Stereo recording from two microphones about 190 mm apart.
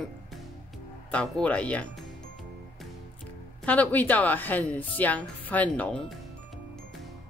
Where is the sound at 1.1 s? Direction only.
5° left (ahead or behind).